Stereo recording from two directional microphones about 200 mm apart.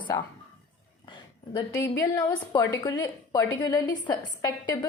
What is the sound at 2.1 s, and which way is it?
A woman's voice, 15° left (ahead or behind).